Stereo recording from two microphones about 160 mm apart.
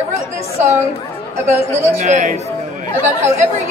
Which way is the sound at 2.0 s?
50° right (ahead or behind).